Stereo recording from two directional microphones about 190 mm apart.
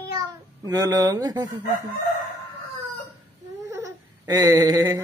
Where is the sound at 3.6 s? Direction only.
15° right (ahead or behind).